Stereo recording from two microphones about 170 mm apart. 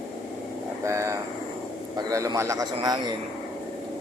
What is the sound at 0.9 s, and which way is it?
A man's voice, 15° right (ahead or behind).